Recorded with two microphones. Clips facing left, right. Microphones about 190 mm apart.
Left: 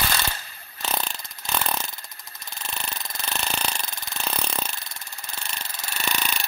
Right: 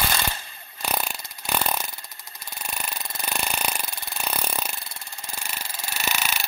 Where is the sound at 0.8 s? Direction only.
10° right (ahead or behind).